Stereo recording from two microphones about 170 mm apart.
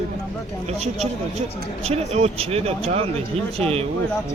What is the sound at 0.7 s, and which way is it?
Speech, 40° right (ahead or behind).